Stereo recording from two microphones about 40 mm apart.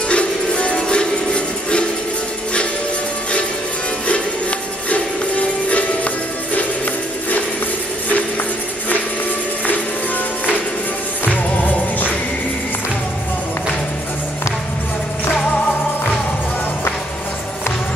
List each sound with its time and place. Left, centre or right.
0.1 s music: left
4.1 s music: left
11.3 s music: left